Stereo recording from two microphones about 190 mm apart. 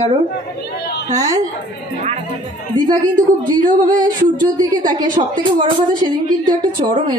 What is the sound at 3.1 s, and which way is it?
A woman's voice, 45° right (ahead or behind).